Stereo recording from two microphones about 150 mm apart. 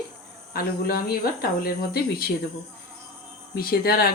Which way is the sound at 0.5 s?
80° left.